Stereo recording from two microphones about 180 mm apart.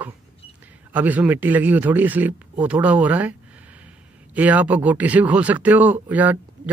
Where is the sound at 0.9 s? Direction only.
10° right (ahead or behind).